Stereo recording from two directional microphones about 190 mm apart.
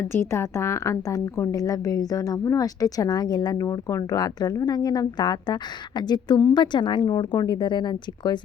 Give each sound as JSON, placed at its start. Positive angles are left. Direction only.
{"t": 0.1, "sound": "a woman's voice", "side_deg": 15}